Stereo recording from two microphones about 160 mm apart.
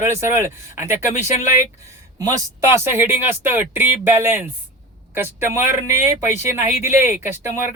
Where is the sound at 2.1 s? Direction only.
20° right (ahead or behind).